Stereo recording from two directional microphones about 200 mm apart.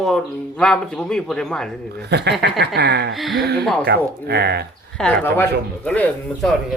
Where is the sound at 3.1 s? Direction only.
Centre (ahead or behind).